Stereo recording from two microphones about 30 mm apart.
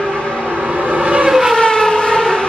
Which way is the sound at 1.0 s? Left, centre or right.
Right.